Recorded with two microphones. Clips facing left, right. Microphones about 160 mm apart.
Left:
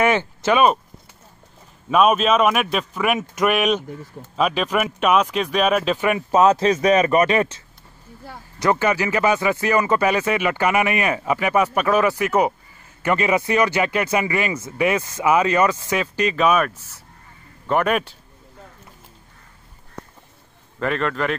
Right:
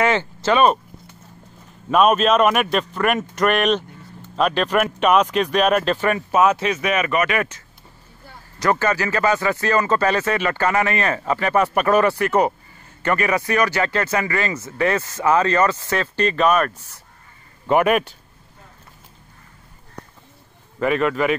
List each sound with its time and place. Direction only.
0.0 s a sound: 20° left (ahead or behind)
1.9 s a man's voice: centre (ahead or behind)
6.3 s speech: 30° left (ahead or behind)
8.5 s speech: 15° left (ahead or behind)
13.0 s speech: 20° left (ahead or behind)
17.6 s a man's voice: 10° right (ahead or behind)
20.8 s speech: 5° right (ahead or behind)